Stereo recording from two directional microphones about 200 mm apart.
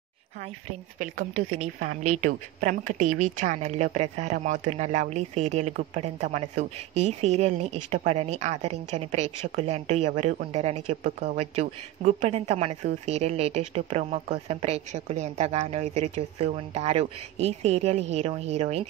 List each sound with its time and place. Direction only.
0.9 s speech: 40° right (ahead or behind)